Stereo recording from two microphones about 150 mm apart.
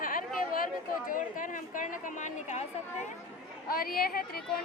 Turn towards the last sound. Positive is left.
turn(degrees=90)